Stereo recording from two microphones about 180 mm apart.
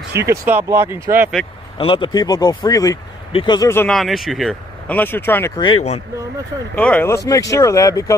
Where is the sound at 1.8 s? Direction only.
30° left (ahead or behind).